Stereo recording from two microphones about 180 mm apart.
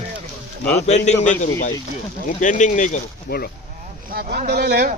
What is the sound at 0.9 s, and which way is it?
A man's voice, 40° left (ahead or behind).